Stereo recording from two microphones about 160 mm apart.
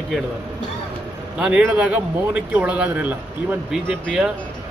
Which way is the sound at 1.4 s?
5° right (ahead or behind).